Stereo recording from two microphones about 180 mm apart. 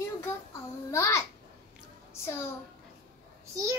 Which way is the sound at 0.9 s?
15° left (ahead or behind).